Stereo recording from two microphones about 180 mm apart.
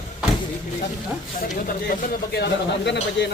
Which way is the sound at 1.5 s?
55° left (ahead or behind).